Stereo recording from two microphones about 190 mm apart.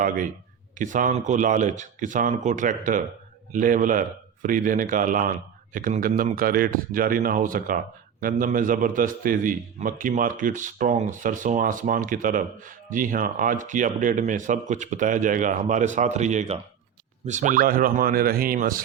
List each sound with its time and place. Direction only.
0.8 s a man's voice: 45° right (ahead or behind)